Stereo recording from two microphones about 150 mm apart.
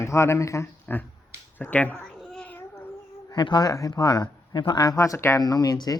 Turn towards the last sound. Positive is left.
turn(degrees=25)  # may be behind; listen again after turning